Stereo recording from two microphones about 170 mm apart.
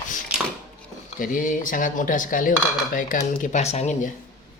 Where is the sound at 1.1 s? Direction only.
50° left (ahead or behind).